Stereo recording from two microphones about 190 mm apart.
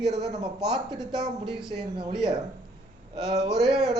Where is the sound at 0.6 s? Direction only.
25° right (ahead or behind).